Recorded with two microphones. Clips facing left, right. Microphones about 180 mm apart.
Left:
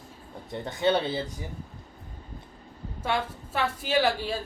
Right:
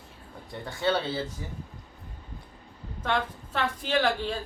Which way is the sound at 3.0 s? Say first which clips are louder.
Even; 10° left (ahead or behind).